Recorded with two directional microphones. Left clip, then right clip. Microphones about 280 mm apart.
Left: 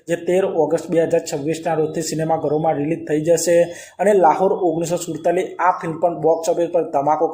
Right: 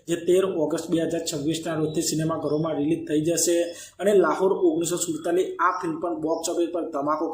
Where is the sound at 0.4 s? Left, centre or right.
Centre.